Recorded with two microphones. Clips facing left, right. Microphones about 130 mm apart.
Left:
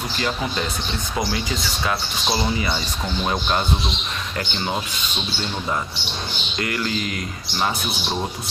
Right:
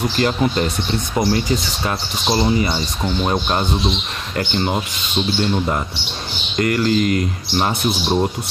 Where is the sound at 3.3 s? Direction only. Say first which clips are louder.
Right 1 dB; 30° right (ahead or behind).